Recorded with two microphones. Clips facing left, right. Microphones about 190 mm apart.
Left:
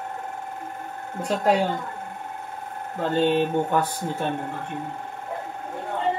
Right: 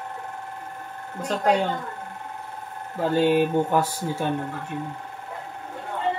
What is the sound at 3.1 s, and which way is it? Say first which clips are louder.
Speech: right 1 dB; 10° right (ahead or behind).